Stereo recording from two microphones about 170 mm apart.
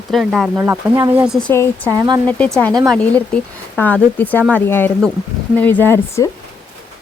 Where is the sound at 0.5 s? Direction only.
15° right (ahead or behind).